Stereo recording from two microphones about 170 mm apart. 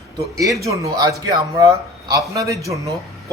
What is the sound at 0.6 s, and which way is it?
Speech, 20° right (ahead or behind).